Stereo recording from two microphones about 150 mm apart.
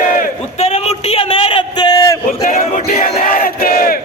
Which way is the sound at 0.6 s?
45° left (ahead or behind).